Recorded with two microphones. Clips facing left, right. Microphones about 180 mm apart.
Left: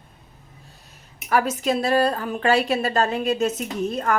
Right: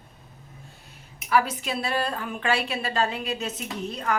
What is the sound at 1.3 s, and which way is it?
A woman's voice, 45° left (ahead or behind).